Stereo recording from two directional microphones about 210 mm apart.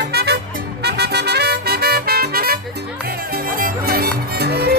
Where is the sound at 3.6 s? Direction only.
50° right (ahead or behind).